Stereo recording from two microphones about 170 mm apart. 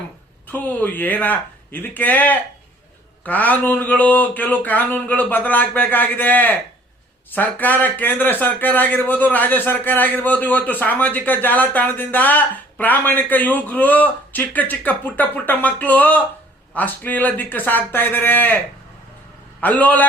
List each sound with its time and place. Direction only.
0.4 s a man's voice: 10° left (ahead or behind)